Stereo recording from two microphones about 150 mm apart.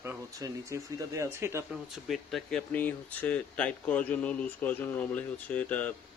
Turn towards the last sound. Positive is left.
turn(degrees=10)  # may be behind; listen again after turning